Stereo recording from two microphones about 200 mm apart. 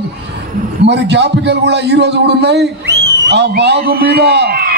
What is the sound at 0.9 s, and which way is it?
A man's voice, 60° right (ahead or behind).